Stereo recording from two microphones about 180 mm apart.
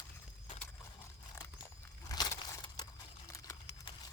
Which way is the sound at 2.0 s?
20° left (ahead or behind).